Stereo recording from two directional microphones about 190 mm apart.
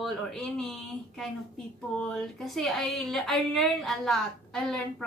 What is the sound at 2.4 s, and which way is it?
A woman's voice, centre (ahead or behind).